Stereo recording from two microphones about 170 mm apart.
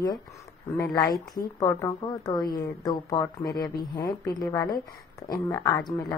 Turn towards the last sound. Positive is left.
turn(degrees=20)  # may be behind; listen again after turning